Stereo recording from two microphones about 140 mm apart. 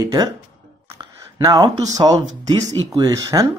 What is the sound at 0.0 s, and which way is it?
Speech, 25° right (ahead or behind).